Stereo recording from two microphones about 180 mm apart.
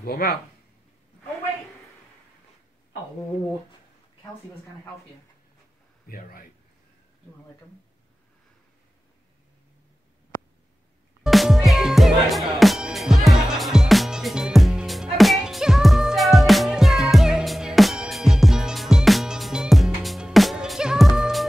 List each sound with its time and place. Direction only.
0.0 s speech: 60° left (ahead or behind)
6.0 s speech: 55° left (ahead or behind)
11.2 s music: centre (ahead or behind)